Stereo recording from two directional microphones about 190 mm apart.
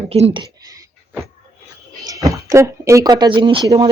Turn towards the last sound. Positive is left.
turn(degrees=-25)  # may be behind; listen again after turning